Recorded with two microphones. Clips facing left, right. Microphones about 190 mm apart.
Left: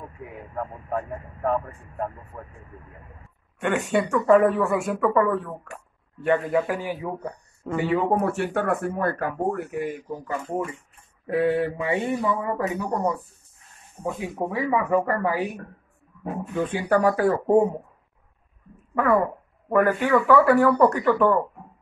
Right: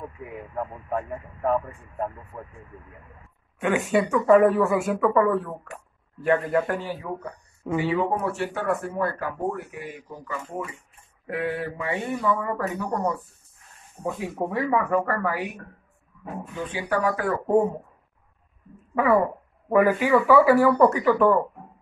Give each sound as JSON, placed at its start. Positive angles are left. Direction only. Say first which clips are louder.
{"t": 0.2, "sound": "speech", "louder": "even", "side_deg": 0}
{"t": 3.5, "sound": "speech", "louder": "right 1 dB", "side_deg": 0}
{"t": 6.8, "sound": "speech", "louder": "left 3 dB", "side_deg": 15}
{"t": 7.8, "sound": "speech", "louder": "left 3 dB", "side_deg": 50}
{"t": 11.2, "sound": "speech", "louder": "left 6 dB", "side_deg": 25}
{"t": 14.0, "sound": "speech", "louder": "even", "side_deg": 0}
{"t": 14.9, "sound": "speech", "louder": "left 2 dB", "side_deg": 20}
{"t": 16.5, "sound": "speech", "louder": "left 5 dB", "side_deg": 50}
{"t": 18.9, "sound": "speech", "louder": "right 1 dB", "side_deg": -5}